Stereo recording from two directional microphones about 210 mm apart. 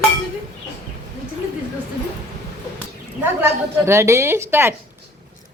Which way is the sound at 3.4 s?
10° right (ahead or behind).